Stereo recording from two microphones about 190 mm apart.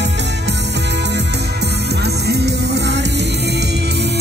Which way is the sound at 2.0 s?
60° right (ahead or behind).